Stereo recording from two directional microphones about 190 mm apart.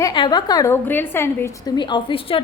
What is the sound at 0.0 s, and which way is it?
A woman's voice, 25° left (ahead or behind).